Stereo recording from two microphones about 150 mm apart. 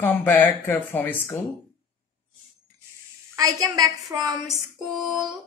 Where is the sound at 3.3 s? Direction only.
25° right (ahead or behind).